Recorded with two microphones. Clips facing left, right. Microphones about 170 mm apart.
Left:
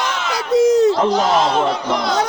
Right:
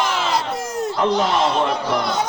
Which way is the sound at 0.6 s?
75° left (ahead or behind).